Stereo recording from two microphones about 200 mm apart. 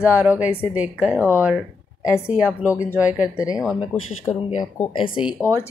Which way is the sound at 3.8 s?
30° left (ahead or behind).